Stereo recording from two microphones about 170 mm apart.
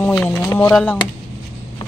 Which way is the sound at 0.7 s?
5° left (ahead or behind).